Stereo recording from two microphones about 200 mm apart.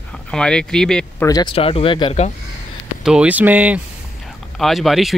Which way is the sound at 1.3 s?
25° left (ahead or behind).